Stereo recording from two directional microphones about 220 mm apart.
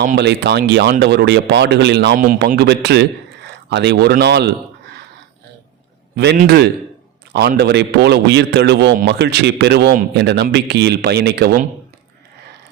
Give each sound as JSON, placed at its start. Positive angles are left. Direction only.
{"t": 0.0, "sound": "a man's voice", "side_deg": -45}
{"t": 6.1, "sound": "a man's voice", "side_deg": -45}